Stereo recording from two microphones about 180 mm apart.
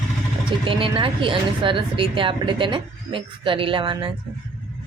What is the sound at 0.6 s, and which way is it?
A woman's voice, 30° right (ahead or behind).